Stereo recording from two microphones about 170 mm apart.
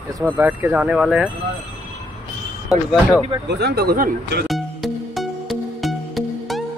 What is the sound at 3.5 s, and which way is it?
Speech, 75° right (ahead or behind).